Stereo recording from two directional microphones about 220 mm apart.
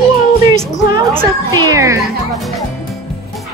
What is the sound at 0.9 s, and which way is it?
A child's voice, 15° right (ahead or behind).